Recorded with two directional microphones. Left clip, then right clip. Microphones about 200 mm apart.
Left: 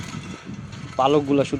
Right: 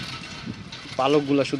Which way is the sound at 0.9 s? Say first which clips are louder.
Left 2 dB; 15° left (ahead or behind).